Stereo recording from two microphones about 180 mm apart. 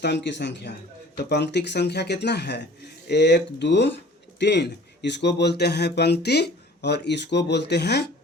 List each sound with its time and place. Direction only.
0.0 s speech: 70° left (ahead or behind)